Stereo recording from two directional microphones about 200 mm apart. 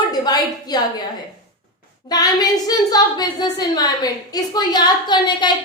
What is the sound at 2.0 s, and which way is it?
A woman's voice, 20° left (ahead or behind).